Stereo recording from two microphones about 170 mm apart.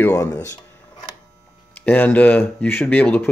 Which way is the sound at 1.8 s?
10° left (ahead or behind).